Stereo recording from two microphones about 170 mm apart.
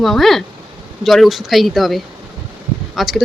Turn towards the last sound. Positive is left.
turn(degrees=0)  # may be behind; listen again after turning